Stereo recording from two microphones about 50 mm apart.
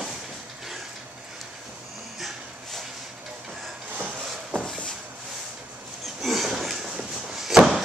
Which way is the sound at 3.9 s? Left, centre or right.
Right.